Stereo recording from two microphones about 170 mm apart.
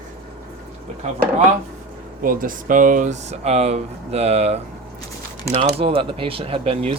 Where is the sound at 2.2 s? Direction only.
55° right (ahead or behind); by 4.6 s 40° right (ahead or behind).